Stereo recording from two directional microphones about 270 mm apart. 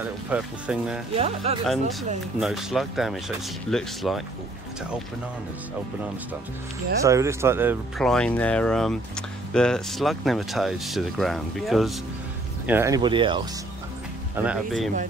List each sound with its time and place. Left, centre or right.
0.0 s speech: centre
1.1 s speech: right
2.4 s speech: centre
7.0 s speech: centre
8.0 s speech: centre
14.3 s speech: centre